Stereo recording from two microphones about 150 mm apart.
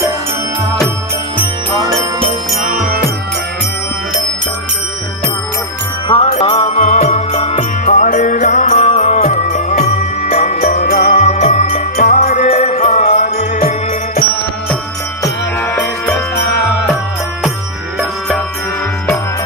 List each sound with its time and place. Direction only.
1.7 s jingle bell: 35° right (ahead or behind)
2.6 s music: 60° right (ahead or behind)
6.4 s music: 35° left (ahead or behind)
6.8 s music: 50° left (ahead or behind)
7.8 s music: 55° left (ahead or behind)
15.6 s music: 15° left (ahead or behind)